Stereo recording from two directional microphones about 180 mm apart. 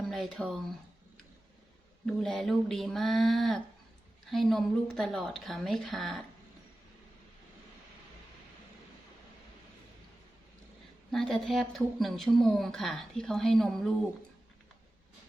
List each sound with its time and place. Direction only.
0.1 s speech: centre (ahead or behind)
2.0 s speech: centre (ahead or behind)
11.1 s speech: centre (ahead or behind)